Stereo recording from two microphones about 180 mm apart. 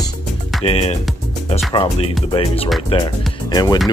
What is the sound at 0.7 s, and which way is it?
Speech, 35° left (ahead or behind).